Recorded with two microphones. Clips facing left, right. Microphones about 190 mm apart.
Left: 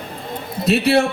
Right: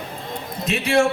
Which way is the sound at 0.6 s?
35° left (ahead or behind).